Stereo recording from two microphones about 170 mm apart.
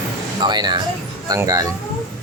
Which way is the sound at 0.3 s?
25° right (ahead or behind).